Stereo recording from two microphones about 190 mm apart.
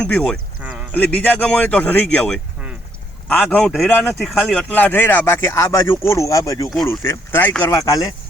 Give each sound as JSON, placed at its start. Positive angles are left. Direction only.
{"t": 0.0, "sound": "speech", "side_deg": 5}
{"t": 0.6, "sound": "a sound", "side_deg": -5}
{"t": 0.9, "sound": "speech", "side_deg": 10}